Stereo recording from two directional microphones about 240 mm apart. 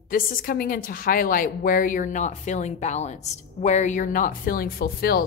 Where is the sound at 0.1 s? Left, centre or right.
Left.